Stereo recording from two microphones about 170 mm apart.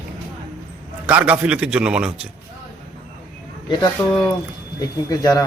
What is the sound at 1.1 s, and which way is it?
A man's voice, 10° right (ahead or behind).